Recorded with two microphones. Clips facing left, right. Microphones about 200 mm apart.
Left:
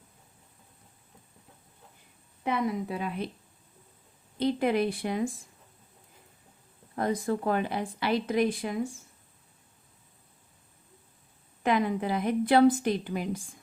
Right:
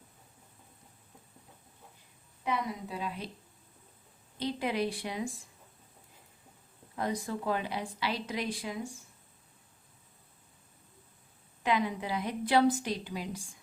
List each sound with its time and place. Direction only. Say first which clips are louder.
2.4 s a woman's voice: left 5 dB; 60° left (ahead or behind)
4.4 s a woman's voice: left 6 dB; 55° left (ahead or behind)
6.9 s a woman's voice: left 6 dB; 55° left (ahead or behind)
11.6 s a woman's voice: left 4 dB; 50° left (ahead or behind)